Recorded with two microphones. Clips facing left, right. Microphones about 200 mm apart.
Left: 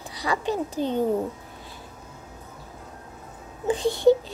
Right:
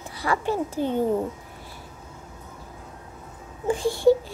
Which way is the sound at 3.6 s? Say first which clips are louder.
Even; 20° left (ahead or behind).